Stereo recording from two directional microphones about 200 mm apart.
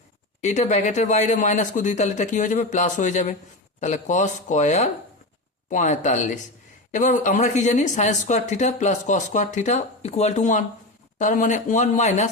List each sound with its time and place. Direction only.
0.4 s speech: 35° left (ahead or behind)